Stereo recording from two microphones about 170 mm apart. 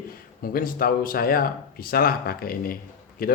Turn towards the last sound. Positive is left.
turn(degrees=60)  # may be behind; listen again after turning